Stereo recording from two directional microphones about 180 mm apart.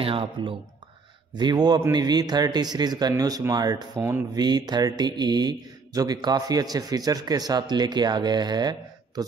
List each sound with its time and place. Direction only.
0.0 s speech: 30° right (ahead or behind); by 4.3 s 10° right (ahead or behind)
4.4 s speech: 20° right (ahead or behind)